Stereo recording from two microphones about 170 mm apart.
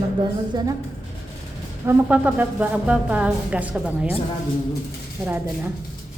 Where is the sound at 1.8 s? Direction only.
10° right (ahead or behind).